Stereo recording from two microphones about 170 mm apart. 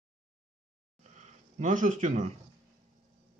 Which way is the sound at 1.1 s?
50° right (ahead or behind).